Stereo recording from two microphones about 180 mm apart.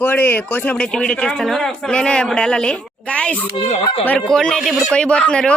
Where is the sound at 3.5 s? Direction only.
30° left (ahead or behind).